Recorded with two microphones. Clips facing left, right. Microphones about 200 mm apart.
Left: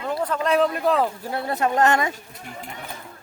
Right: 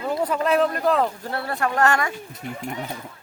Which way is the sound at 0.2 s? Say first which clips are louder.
Even; 5° right (ahead or behind).